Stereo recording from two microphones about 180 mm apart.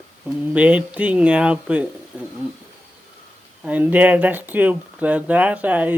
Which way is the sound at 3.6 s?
10° right (ahead or behind).